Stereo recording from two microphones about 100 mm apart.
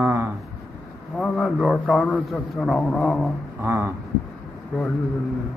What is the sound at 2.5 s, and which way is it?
Speech, centre (ahead or behind).